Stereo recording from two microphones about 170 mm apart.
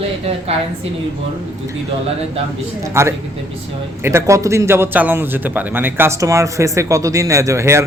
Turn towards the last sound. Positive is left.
turn(degrees=-15)  # may be behind; listen again after turning